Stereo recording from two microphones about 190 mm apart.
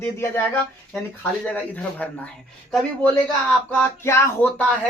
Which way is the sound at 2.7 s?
5° left (ahead or behind).